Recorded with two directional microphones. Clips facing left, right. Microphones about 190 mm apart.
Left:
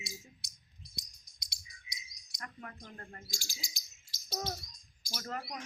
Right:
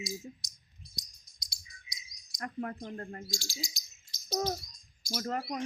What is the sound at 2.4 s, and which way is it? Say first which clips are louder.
Child singing: right 11 dB; 45° right (ahead or behind).